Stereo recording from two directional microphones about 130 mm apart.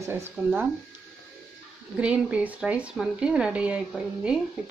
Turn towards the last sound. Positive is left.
turn(degrees=-5)  # may be behind; listen again after turning